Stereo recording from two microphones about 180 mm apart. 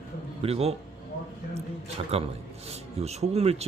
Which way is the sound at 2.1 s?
35° right (ahead or behind).